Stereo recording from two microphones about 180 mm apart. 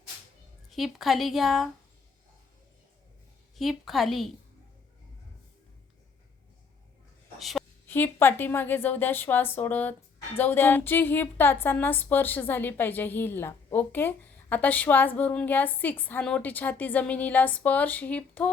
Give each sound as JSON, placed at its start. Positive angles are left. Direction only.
{"t": 0.7, "sound": "speech", "side_deg": 0}
{"t": 3.5, "sound": "speech", "side_deg": 0}
{"t": 7.3, "sound": "a sound", "side_deg": 0}
{"t": 7.9, "sound": "a woman's voice", "side_deg": 10}